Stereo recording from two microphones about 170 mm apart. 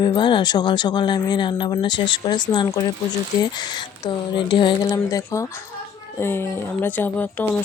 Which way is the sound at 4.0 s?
30° left (ahead or behind).